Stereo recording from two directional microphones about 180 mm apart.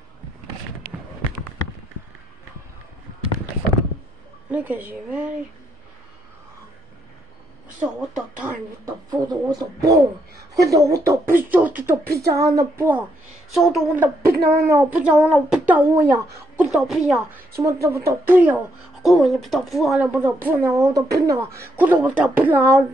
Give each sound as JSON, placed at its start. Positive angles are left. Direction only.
{"t": 4.5, "sound": "speech", "side_deg": -10}
{"t": 7.8, "sound": "speech", "side_deg": -10}
{"t": 8.8, "sound": "speech", "side_deg": -25}
{"t": 13.5, "sound": "a woman's voice", "side_deg": 0}
{"t": 14.2, "sound": "speech", "side_deg": -60}
{"t": 14.5, "sound": "speech", "side_deg": -15}
{"t": 16.5, "sound": "a woman's voice", "side_deg": 0}
{"t": 17.6, "sound": "a woman's voice", "side_deg": -15}